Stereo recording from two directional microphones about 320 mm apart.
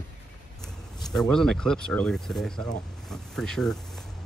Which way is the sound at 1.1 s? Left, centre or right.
Centre.